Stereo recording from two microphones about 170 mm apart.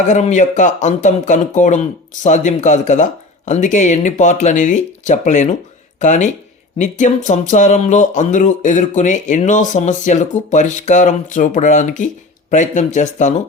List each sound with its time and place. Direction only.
0.0 s speech: 45° left (ahead or behind)